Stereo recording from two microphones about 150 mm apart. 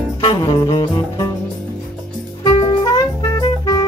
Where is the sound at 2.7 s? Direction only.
25° left (ahead or behind).